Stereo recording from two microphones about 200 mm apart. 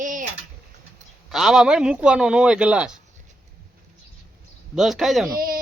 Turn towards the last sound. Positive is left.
turn(degrees=-45)  # may be behind; listen again after turning